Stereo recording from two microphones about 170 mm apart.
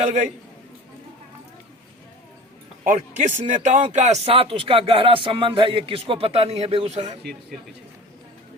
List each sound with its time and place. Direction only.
0.0 s speech: 45° right (ahead or behind)
2.8 s speech: 45° right (ahead or behind)